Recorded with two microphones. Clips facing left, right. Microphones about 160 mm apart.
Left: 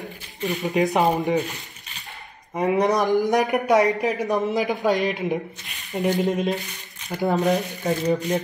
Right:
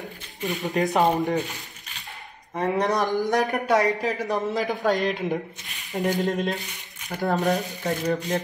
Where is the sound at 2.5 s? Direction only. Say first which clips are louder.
Left 3 dB; 15° left (ahead or behind).